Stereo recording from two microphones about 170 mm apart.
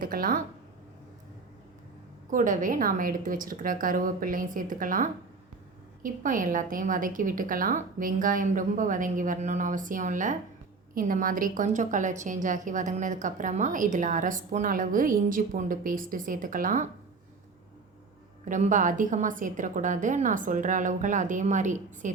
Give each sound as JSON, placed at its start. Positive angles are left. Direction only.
{"t": 0.0, "sound": "speech", "side_deg": -55}
{"t": 2.3, "sound": "a woman's voice", "side_deg": -50}
{"t": 18.4, "sound": "a woman's voice", "side_deg": -50}